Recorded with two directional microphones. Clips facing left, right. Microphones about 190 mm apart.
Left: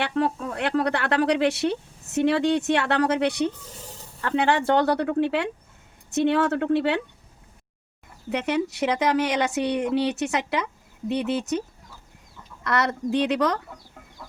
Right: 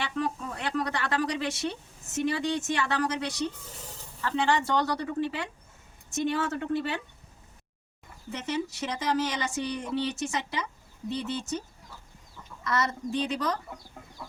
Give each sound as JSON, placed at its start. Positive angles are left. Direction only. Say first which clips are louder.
{"t": 0.0, "sound": "speech", "louder": "left 6 dB", "side_deg": 65}
{"t": 8.3, "sound": "a woman's voice", "louder": "left 7 dB", "side_deg": 65}
{"t": 12.6, "sound": "a woman's voice", "louder": "left 5 dB", "side_deg": 65}
{"t": 14.2, "sound": "music", "louder": "even", "side_deg": -10}